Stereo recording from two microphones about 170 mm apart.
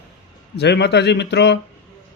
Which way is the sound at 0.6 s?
80° left.